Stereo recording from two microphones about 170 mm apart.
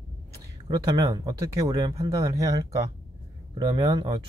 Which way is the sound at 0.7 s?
25° right (ahead or behind).